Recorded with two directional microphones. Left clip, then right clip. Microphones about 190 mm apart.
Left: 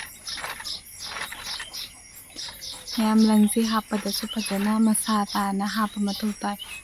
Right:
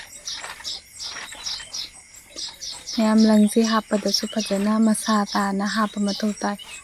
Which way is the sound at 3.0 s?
10° right (ahead or behind).